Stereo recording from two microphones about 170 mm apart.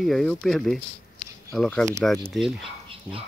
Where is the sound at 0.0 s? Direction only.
Centre (ahead or behind).